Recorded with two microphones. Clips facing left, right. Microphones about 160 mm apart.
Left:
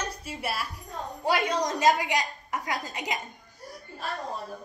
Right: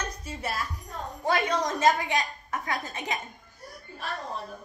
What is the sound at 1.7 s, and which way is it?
A woman's voice, 15° left (ahead or behind).